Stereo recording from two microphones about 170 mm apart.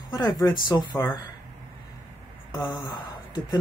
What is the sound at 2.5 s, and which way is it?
Speech, 20° left (ahead or behind).